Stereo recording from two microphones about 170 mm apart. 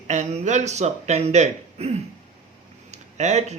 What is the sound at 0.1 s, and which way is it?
Speech, 45° right (ahead or behind).